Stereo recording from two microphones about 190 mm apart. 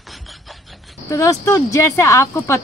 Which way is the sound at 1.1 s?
15° left (ahead or behind).